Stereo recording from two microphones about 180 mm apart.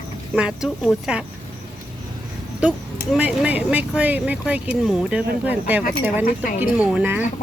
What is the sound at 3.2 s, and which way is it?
Speech, 10° right (ahead or behind).